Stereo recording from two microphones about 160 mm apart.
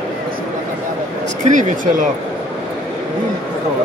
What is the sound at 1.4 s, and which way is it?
Speech, 55° right (ahead or behind).